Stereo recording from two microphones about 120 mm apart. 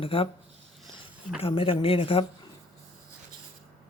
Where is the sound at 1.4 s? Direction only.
50° left (ahead or behind).